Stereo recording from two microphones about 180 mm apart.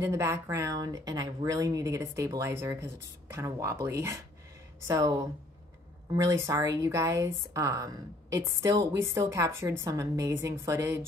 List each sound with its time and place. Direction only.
0.0 s speech: 15° right (ahead or behind)